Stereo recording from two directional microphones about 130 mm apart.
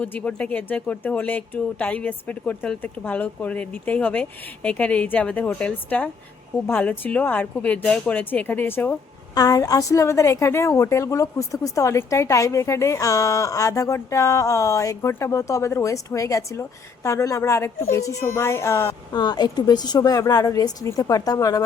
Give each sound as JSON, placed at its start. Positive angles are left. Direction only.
{"t": 0.0, "sound": "speech", "side_deg": 10}
{"t": 9.3, "sound": "a woman's voice", "side_deg": 25}
{"t": 19.1, "sound": "a woman's voice", "side_deg": 30}